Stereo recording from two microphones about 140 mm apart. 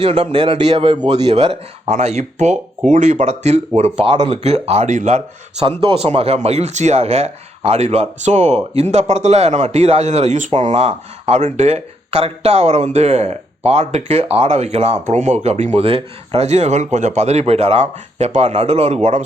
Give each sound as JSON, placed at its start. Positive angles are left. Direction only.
{"t": 0.0, "sound": "speech", "side_deg": -45}
{"t": 1.0, "sound": "speech", "side_deg": -50}
{"t": 5.6, "sound": "speech", "side_deg": -45}